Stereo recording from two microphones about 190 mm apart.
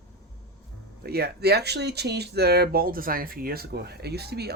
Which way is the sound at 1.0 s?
55° right (ahead or behind).